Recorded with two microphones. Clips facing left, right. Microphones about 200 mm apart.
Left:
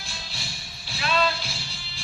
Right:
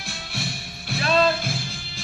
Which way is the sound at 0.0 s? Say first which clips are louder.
Right 8 dB; 60° right (ahead or behind).